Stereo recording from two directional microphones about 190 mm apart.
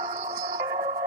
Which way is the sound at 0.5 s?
15° right (ahead or behind).